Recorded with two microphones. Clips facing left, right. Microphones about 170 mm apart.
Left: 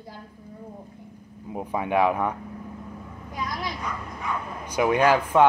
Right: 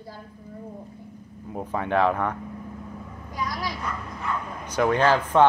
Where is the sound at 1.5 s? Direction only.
10° left (ahead or behind).